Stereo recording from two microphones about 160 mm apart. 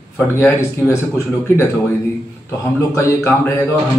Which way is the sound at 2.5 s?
15° left (ahead or behind).